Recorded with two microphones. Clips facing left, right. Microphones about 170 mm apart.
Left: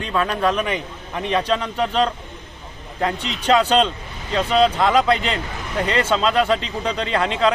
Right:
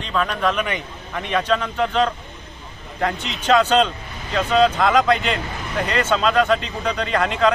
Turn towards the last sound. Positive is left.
turn(degrees=30)  # may be behind; listen again after turning